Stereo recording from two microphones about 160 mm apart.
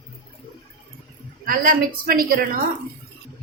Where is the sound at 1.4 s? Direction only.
65° right (ahead or behind).